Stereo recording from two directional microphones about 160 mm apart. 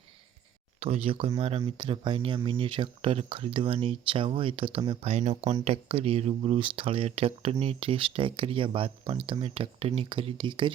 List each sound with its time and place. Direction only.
0.8 s speech: 35° right (ahead or behind)